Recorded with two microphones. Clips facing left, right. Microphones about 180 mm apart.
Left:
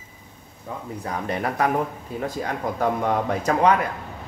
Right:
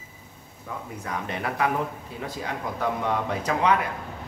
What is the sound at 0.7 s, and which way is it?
Speech, 25° left (ahead or behind).